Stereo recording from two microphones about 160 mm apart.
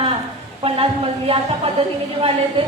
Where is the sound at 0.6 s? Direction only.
35° right (ahead or behind).